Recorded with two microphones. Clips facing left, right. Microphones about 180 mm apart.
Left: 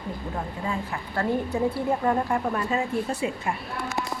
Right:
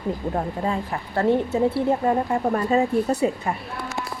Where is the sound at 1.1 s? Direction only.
25° right (ahead or behind).